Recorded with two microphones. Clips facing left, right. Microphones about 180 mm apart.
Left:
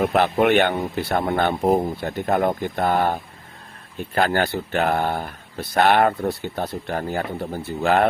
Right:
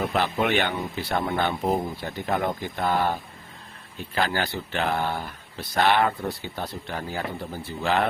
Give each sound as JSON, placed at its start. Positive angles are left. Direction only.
{"t": 0.0, "sound": "speech", "side_deg": 55}